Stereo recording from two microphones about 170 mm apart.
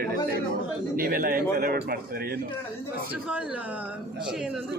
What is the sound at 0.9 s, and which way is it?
Speech, 60° right (ahead or behind).